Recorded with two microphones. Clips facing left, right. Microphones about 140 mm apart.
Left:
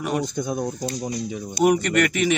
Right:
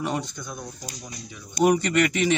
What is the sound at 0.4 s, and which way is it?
Speech, 50° left (ahead or behind).